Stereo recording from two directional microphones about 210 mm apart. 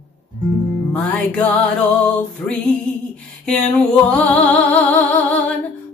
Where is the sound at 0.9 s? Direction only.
5° left (ahead or behind).